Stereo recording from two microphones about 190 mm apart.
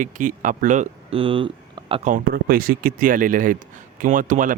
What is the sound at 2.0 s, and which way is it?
Speech, 50° right (ahead or behind).